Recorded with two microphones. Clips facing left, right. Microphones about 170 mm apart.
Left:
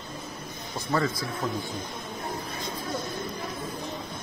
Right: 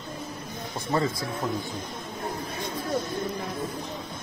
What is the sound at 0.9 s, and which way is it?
Speech, 25° right (ahead or behind).